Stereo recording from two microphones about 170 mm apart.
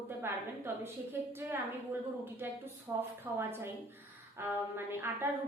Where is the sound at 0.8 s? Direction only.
15° right (ahead or behind).